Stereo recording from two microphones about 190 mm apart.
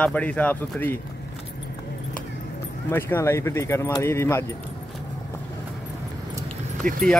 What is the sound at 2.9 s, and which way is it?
Speech, 10° left (ahead or behind).